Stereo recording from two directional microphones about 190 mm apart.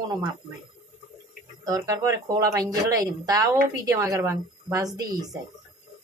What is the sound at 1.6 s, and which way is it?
Speech, 20° right (ahead or behind).